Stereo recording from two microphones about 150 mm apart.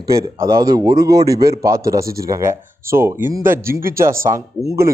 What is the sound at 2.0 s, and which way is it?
Speech, 90° right.